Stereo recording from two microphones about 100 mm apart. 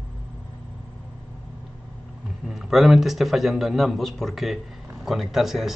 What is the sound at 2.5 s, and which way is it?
A man's voice, centre (ahead or behind).